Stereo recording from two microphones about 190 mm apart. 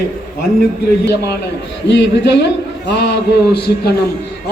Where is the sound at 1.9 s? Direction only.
65° left (ahead or behind).